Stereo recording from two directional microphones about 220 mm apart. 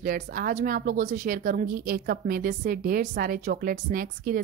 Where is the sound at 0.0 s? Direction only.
40° right (ahead or behind).